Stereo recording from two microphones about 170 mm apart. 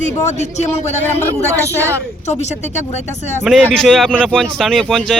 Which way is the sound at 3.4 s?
Centre (ahead or behind).